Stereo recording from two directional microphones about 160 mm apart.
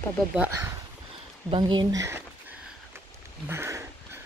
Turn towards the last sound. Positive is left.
turn(degrees=-15)  # may be behind; listen again after turning